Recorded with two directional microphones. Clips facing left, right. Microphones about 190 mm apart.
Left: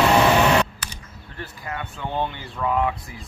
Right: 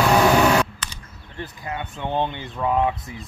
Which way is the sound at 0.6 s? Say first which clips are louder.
Even; 10° left (ahead or behind).